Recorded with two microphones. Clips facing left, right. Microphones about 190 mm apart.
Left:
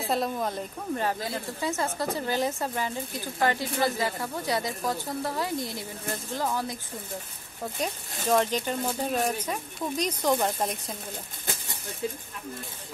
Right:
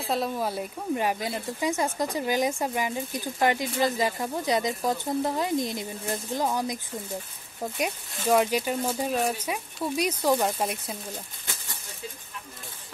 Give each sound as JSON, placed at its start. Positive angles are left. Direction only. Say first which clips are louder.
{"t": 0.0, "sound": "a woman's voice", "louder": "even", "side_deg": 0}